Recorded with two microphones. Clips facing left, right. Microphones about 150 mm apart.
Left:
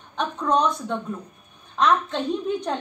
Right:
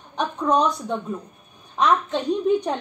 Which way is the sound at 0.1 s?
15° right (ahead or behind).